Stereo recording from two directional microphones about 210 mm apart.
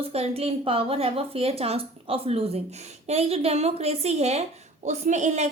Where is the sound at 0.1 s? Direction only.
30° right (ahead or behind).